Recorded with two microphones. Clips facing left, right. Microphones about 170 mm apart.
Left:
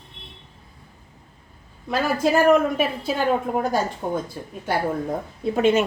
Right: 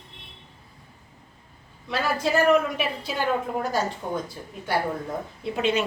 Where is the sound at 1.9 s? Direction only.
45° left (ahead or behind).